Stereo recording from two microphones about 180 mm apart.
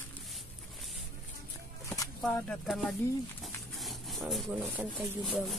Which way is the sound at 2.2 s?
5° left (ahead or behind).